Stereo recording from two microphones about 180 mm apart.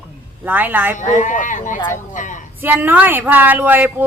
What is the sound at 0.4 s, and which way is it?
Speech, 10° right (ahead or behind).